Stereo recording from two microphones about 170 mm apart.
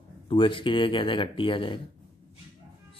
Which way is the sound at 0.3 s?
30° left (ahead or behind).